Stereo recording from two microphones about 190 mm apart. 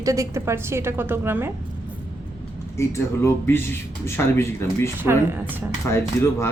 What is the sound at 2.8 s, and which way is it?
Speech, 15° left (ahead or behind).